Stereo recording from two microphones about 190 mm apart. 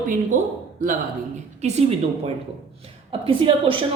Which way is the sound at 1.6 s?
35° right (ahead or behind).